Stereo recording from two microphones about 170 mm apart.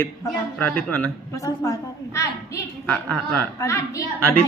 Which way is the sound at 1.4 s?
20° left (ahead or behind).